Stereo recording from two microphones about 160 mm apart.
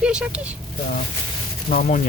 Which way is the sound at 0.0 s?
5° right (ahead or behind).